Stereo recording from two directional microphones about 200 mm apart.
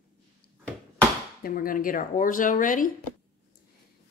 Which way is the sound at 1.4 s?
45° left (ahead or behind).